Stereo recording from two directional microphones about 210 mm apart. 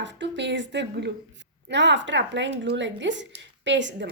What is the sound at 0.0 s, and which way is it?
A woman's voice, 60° right (ahead or behind).